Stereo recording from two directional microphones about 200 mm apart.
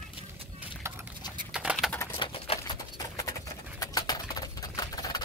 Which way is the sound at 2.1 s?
25° left (ahead or behind).